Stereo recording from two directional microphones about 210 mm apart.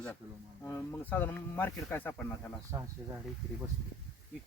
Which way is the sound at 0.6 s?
10° left (ahead or behind).